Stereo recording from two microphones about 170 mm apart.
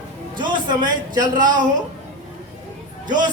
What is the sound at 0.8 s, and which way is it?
Speech, 25° right (ahead or behind).